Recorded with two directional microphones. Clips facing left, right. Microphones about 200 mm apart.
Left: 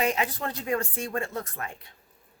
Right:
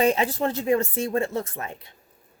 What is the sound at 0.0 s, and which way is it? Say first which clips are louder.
Speech: right 6 dB; 30° right (ahead or behind).